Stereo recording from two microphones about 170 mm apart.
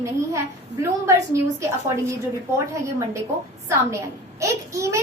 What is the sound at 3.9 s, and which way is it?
A woman's voice, 20° right (ahead or behind).